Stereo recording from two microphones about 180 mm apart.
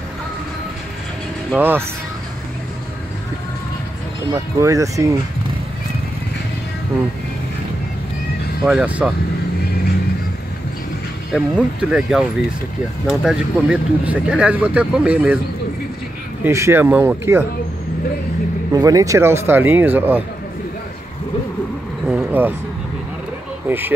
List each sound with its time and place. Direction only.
1.6 s speech: 10° right (ahead or behind)
4.6 s speech: 15° right (ahead or behind)
8.6 s speech: 10° right (ahead or behind)
11.3 s speech: centre (ahead or behind)
16.4 s speech: 15° right (ahead or behind)
18.7 s speech: 20° right (ahead or behind)
22.0 s vehicle: 10° right (ahead or behind)
23.7 s speech: 10° right (ahead or behind)